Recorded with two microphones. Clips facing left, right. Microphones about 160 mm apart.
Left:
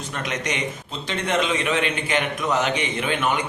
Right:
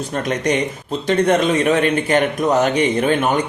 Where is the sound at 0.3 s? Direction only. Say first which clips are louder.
Right 8 dB; 40° right (ahead or behind).